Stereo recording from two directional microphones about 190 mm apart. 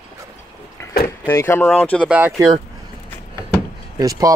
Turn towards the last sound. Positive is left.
turn(degrees=-20)  # may be behind; listen again after turning